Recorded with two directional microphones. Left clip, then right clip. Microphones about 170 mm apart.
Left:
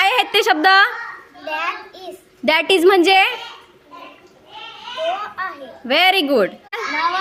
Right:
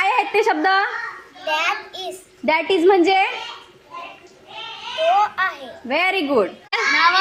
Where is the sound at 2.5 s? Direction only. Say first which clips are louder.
Left 3 dB; 90° left.